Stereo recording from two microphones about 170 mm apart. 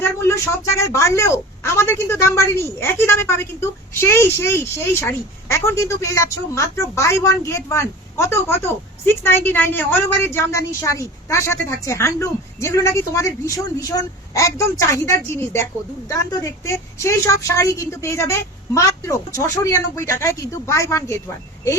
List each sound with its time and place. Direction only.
0.0 s a woman's voice: 15° left (ahead or behind)